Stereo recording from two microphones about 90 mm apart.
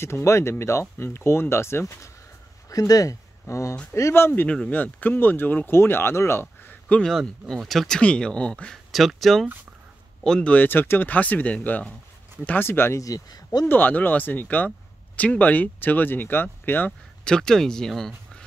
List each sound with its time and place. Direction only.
0.0 s speech: 30° left (ahead or behind)
6.6 s a sound: 15° left (ahead or behind)
7.1 s speech: 5° left (ahead or behind)
8.9 s speech: centre (ahead or behind); by 13.0 s 25° left (ahead or behind)
13.0 s speech: 45° left (ahead or behind)
13.7 s speech: 20° left (ahead or behind)
17.2 s speech: 10° left (ahead or behind)